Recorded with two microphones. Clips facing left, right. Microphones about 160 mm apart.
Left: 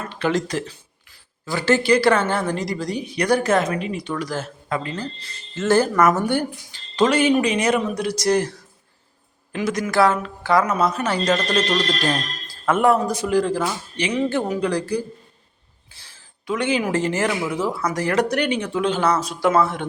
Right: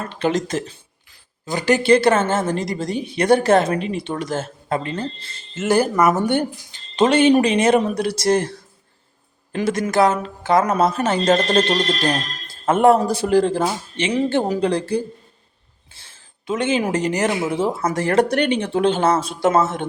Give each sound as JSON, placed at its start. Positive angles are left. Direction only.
{"t": 0.2, "sound": "a woman's voice", "side_deg": -20}
{"t": 5.6, "sound": "a woman's voice", "side_deg": -15}
{"t": 9.5, "sound": "a woman's voice", "side_deg": -30}